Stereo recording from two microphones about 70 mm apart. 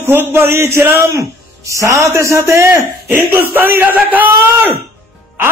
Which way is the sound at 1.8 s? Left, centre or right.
Right.